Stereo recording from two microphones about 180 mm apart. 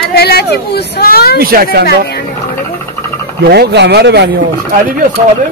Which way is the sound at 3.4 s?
65° right (ahead or behind).